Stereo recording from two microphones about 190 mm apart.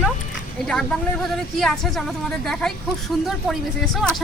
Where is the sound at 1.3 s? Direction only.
Centre (ahead or behind).